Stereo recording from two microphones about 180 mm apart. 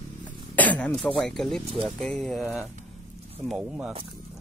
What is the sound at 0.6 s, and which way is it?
Speech, 10° left (ahead or behind).